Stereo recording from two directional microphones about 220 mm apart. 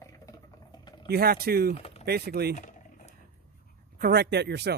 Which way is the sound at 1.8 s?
25° left (ahead or behind).